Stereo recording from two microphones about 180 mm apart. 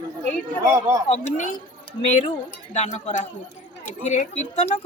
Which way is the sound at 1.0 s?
40° left (ahead or behind).